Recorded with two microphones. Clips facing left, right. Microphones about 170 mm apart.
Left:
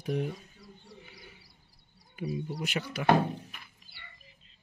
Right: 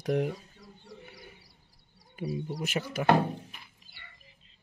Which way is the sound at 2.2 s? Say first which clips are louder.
Right 1 dB; 35° right (ahead or behind).